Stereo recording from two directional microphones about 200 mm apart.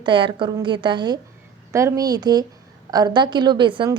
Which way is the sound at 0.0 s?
25° right (ahead or behind).